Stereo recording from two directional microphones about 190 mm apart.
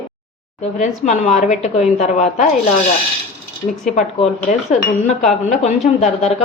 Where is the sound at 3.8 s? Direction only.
40° left (ahead or behind).